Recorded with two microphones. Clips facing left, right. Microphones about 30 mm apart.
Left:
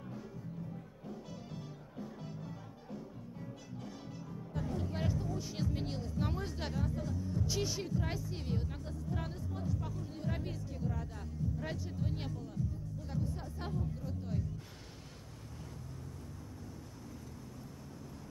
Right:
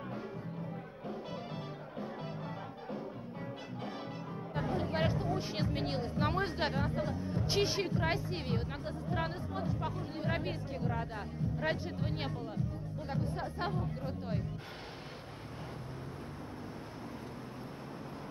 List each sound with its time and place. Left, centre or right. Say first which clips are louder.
1.0 s music: right 7 dB; right
3.8 s speech: right 7 dB; right